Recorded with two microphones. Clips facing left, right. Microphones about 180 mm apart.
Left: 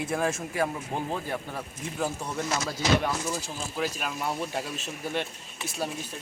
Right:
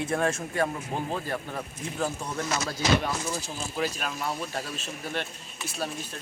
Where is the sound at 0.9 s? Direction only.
15° left (ahead or behind).